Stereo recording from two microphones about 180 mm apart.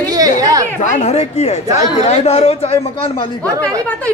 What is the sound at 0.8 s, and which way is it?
Speech, 45° left (ahead or behind).